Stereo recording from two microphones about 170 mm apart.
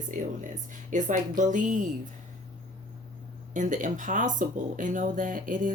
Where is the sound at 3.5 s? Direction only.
50° right (ahead or behind).